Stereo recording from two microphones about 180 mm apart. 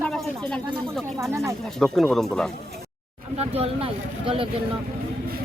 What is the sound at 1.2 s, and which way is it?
Speech, 15° right (ahead or behind).